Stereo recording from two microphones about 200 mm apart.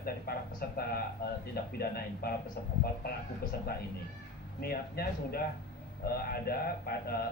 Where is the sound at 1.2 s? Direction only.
50° left (ahead or behind).